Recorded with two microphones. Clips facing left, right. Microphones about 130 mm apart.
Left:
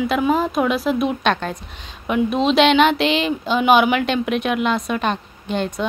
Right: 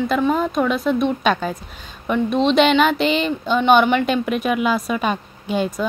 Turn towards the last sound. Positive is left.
turn(degrees=-5)  # may be behind; listen again after turning